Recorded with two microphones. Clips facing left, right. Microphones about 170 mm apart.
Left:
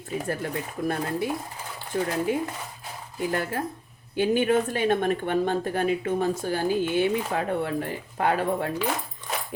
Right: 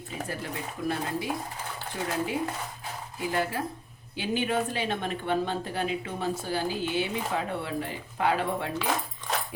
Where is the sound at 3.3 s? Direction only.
50° left (ahead or behind).